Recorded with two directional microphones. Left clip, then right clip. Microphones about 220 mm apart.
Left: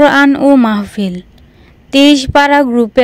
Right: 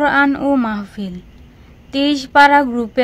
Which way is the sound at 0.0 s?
40° left (ahead or behind).